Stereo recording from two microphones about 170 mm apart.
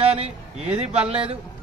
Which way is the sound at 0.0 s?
35° right (ahead or behind).